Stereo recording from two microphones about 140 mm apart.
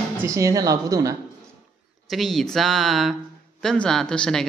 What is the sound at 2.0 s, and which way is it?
Speech, centre (ahead or behind).